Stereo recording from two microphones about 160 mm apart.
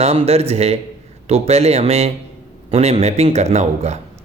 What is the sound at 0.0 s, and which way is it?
A man's voice, 40° right (ahead or behind).